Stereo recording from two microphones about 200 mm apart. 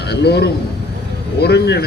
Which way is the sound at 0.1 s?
55° left (ahead or behind).